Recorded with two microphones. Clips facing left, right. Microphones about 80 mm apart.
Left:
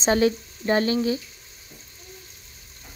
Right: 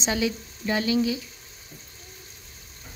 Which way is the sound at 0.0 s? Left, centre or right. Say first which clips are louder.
Left 6 dB; left.